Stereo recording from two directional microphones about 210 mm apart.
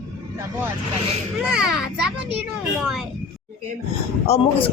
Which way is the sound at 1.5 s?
5° right (ahead or behind).